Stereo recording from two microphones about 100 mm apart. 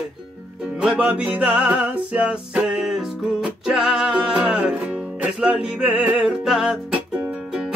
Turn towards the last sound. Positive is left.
turn(degrees=-10)  # may be behind; listen again after turning